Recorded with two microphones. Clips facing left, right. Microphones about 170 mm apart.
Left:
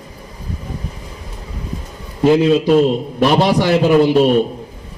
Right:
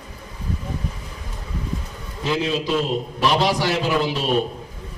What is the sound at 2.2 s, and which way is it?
A man's voice, 50° left (ahead or behind).